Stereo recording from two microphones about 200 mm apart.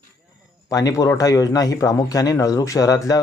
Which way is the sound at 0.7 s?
15° left (ahead or behind).